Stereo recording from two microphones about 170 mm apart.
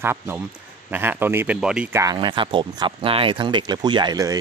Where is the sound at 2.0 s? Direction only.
30° right (ahead or behind).